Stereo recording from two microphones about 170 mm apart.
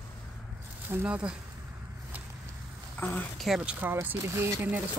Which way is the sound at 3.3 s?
Centre (ahead or behind).